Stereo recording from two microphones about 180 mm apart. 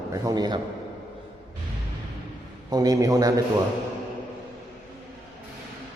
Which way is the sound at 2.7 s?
20° right (ahead or behind).